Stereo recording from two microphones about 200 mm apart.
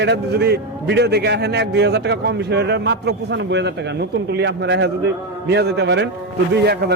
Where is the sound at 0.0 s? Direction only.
55° right (ahead or behind).